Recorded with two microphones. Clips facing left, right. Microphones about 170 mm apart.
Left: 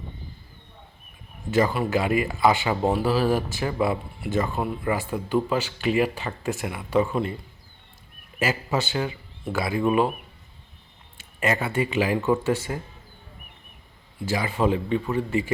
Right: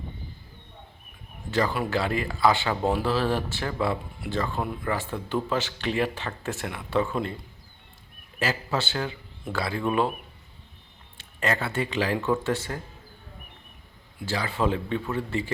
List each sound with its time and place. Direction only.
1.9 s speech: 15° left (ahead or behind)
3.1 s speech: 15° left (ahead or behind)
4.5 s speech: 5° left (ahead or behind)
8.4 s speech: centre (ahead or behind)
9.5 s speech: 15° left (ahead or behind)
9.7 s speech: 5° left (ahead or behind)
11.2 s speech: 5° left (ahead or behind)
14.3 s speech: 15° left (ahead or behind)
14.5 s speech: centre (ahead or behind)